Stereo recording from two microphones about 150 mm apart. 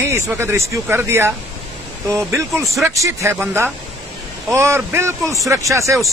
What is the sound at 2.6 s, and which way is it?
Speech, centre (ahead or behind).